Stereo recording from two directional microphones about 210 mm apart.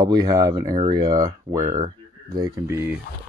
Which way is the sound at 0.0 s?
20° right (ahead or behind).